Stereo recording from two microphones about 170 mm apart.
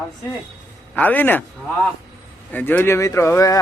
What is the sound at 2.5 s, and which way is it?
A man's voice, 10° left (ahead or behind).